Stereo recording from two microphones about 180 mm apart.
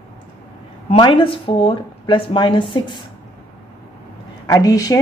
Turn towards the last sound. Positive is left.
turn(degrees=20)  # may be behind; listen again after turning